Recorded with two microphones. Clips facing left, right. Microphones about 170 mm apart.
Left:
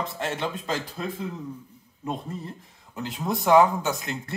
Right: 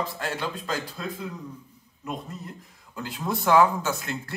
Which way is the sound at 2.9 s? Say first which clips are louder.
Left 1 dB; 20° left (ahead or behind).